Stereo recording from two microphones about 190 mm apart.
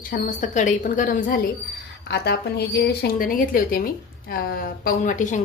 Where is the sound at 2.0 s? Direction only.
60° left (ahead or behind).